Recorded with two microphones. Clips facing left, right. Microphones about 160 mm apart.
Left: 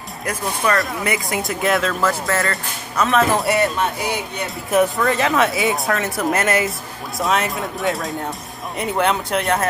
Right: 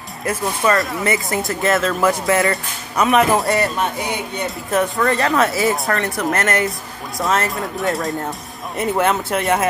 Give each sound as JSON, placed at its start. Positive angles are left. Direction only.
{"t": 0.2, "sound": "speech", "side_deg": -5}
{"t": 2.0, "sound": "speech", "side_deg": -15}
{"t": 3.3, "sound": "speech", "side_deg": 0}
{"t": 4.9, "sound": "speech", "side_deg": 0}